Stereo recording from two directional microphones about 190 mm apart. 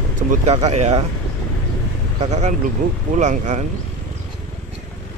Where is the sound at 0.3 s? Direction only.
35° right (ahead or behind).